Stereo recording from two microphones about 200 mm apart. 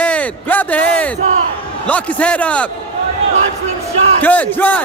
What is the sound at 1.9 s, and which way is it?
Speech, 5° left (ahead or behind).